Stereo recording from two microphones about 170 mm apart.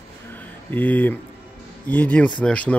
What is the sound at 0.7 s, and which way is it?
Speech, 10° left (ahead or behind).